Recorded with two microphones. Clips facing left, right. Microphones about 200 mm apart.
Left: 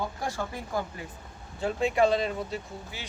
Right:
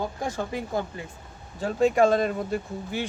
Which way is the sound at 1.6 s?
40° right (ahead or behind).